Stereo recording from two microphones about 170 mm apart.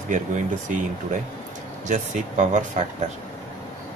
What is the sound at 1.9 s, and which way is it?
Speech, 45° right (ahead or behind).